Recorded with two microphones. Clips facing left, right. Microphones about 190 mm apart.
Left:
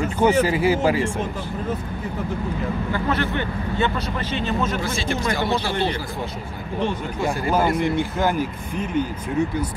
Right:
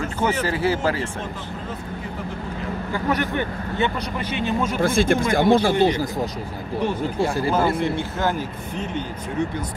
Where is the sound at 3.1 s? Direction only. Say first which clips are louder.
Right 3 dB; 15° right (ahead or behind).